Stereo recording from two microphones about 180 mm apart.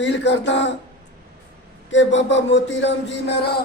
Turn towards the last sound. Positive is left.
turn(degrees=70)  # may be behind; listen again after turning